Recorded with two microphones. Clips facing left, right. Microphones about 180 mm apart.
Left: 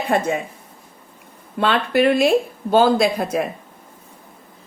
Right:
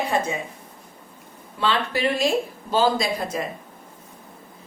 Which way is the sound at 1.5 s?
60° left (ahead or behind).